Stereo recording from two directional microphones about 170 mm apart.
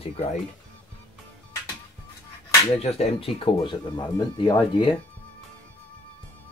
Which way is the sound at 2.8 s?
40° left (ahead or behind).